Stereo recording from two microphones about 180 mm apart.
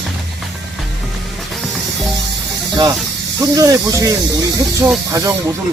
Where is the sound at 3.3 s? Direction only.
20° right (ahead or behind).